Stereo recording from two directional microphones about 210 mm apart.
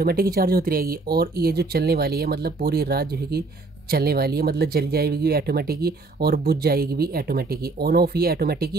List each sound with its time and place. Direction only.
0.0 s speech: 45° right (ahead or behind)